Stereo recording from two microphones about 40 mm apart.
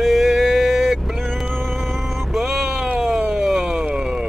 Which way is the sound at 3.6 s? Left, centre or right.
Centre.